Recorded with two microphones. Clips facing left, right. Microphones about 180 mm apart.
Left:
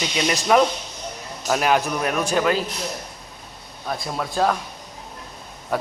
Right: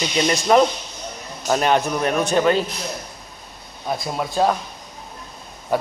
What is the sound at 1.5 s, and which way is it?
Speech, 5° left (ahead or behind).